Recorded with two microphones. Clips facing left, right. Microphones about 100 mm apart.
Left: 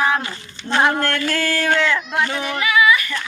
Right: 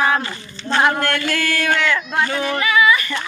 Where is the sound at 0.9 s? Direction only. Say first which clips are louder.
Even; 35° left (ahead or behind).